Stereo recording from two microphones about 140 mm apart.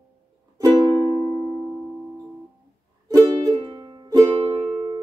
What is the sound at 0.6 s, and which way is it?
Music, 30° right (ahead or behind).